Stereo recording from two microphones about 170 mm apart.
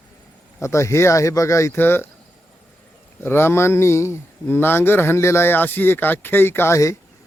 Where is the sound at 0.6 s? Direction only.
15° left (ahead or behind).